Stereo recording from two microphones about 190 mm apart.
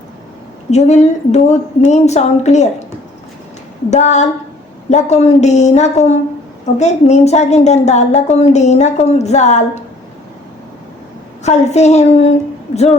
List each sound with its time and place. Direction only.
0.7 s speech: 35° left (ahead or behind)
3.8 s speech: 40° left (ahead or behind)
11.4 s speech: 35° left (ahead or behind)